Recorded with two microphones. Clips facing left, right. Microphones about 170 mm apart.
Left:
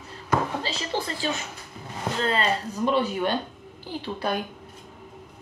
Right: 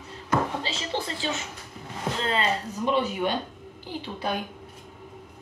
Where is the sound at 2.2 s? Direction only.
15° right (ahead or behind).